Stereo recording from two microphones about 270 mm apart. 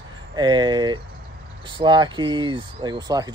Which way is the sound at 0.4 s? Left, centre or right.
Centre.